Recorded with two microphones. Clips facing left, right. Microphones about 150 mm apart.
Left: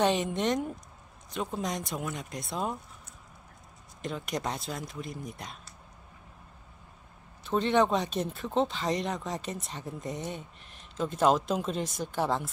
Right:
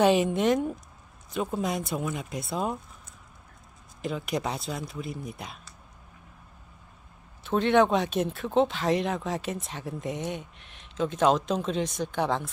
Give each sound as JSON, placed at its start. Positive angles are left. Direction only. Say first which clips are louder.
{"t": 0.0, "sound": "a woman's voice", "louder": "right 5 dB", "side_deg": -5}
{"t": 4.0, "sound": "speech", "louder": "right 3 dB", "side_deg": -5}
{"t": 7.4, "sound": "speech", "louder": "right 3 dB", "side_deg": 0}